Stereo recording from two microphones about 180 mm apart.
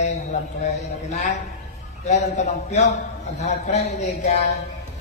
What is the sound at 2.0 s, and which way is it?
A man's voice, 40° left (ahead or behind).